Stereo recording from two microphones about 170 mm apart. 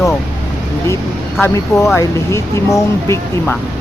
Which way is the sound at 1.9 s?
15° left (ahead or behind).